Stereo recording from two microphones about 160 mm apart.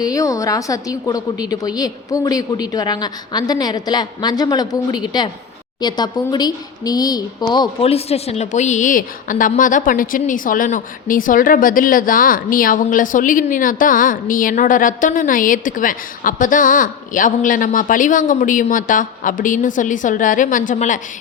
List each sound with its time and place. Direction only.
0.0 s a woman's voice: 20° left (ahead or behind); by 21.0 s 50° left (ahead or behind)